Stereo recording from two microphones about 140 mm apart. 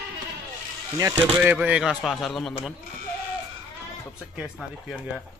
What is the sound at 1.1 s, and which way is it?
Speech, 10° right (ahead or behind).